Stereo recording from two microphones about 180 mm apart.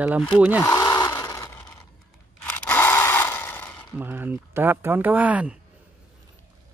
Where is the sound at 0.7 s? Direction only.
20° left (ahead or behind).